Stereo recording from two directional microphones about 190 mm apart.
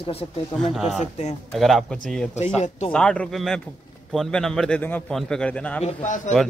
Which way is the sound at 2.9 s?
5° left (ahead or behind).